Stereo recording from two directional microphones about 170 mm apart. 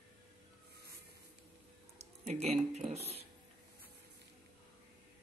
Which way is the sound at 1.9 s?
40° right (ahead or behind).